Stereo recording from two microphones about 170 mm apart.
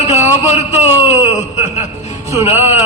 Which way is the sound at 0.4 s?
40° left (ahead or behind).